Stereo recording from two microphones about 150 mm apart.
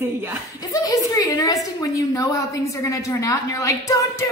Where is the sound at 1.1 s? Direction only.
25° left (ahead or behind).